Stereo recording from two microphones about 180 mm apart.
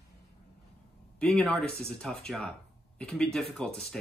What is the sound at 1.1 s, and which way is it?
Speech, 5° left (ahead or behind).